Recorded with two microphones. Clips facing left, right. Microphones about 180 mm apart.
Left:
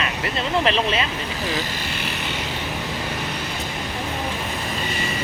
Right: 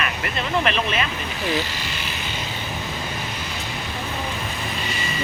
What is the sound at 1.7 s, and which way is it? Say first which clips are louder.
Vehicle: left 2 dB; 50° left (ahead or behind).